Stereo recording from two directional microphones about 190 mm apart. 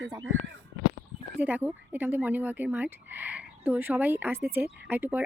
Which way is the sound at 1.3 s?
10° right (ahead or behind).